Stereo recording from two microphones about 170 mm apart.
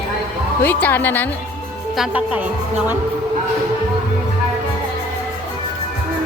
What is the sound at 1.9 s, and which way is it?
Speech, 5° right (ahead or behind).